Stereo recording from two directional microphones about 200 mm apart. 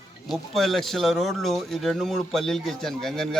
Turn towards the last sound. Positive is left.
turn(degrees=0)  # may be behind; listen again after turning